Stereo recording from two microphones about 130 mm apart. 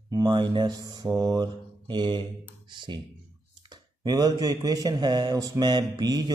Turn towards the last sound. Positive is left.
turn(degrees=-35)  # may be behind; listen again after turning